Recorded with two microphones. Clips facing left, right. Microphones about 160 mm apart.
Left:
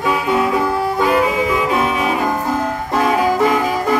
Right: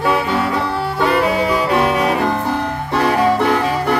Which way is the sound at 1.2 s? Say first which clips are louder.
Right 1 dB; 65° right (ahead or behind).